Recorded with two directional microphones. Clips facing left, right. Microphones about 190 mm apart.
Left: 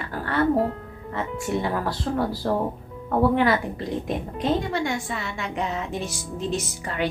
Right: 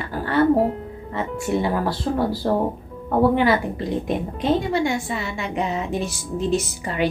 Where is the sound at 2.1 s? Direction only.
15° right (ahead or behind).